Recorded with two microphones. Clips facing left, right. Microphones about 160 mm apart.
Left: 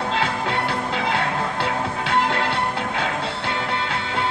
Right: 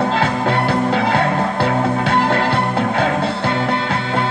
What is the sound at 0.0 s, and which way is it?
Music, 40° right (ahead or behind).